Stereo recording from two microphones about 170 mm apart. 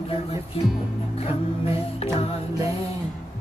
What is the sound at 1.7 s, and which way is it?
Music, 35° left (ahead or behind).